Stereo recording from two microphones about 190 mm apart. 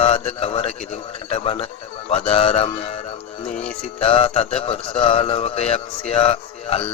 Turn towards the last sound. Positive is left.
turn(degrees=30)  # may be behind; listen again after turning